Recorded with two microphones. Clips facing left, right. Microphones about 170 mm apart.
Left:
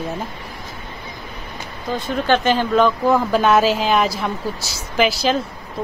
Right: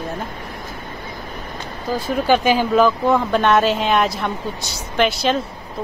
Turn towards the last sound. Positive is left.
turn(degrees=0)  # may be behind; listen again after turning